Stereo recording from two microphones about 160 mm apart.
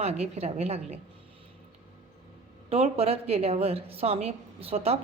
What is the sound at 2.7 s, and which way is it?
A woman's voice, 40° right (ahead or behind).